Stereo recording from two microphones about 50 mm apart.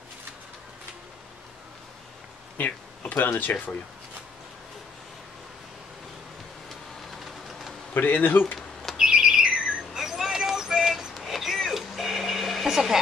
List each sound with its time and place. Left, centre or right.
2.6 s speech: left
7.9 s speech: left
8.9 s a sound: centre
12.6 s speech: centre